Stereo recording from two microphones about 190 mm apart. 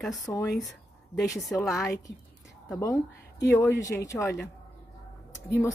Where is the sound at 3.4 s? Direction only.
15° left (ahead or behind).